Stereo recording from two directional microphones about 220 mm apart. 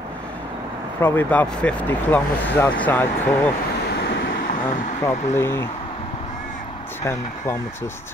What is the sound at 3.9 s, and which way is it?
Waves, 50° left (ahead or behind).